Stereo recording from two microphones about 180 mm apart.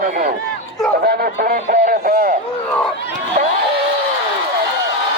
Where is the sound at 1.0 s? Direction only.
60° right (ahead or behind).